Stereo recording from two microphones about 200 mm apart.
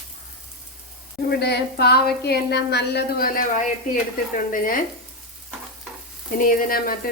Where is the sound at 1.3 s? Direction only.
55° left (ahead or behind).